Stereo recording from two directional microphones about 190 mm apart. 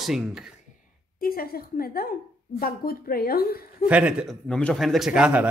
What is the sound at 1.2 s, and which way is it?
A woman's voice, 50° left (ahead or behind).